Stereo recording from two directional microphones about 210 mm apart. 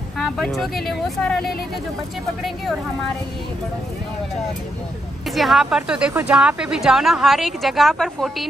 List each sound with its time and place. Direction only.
0.2 s speech: centre (ahead or behind)
5.3 s speech: centre (ahead or behind)